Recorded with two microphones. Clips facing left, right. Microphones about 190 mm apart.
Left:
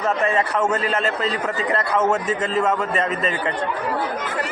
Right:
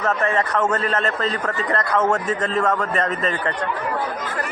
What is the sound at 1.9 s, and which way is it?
A man's voice, 10° left (ahead or behind).